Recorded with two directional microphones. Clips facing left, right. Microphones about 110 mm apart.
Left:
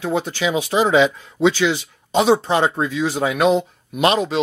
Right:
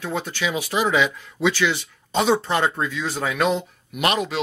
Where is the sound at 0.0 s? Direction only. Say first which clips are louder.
Left 5 dB; 20° left (ahead or behind).